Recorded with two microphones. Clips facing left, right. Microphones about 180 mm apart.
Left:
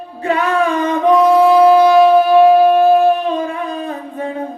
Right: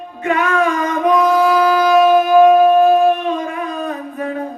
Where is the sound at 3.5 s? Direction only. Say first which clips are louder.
Even; 30° left (ahead or behind).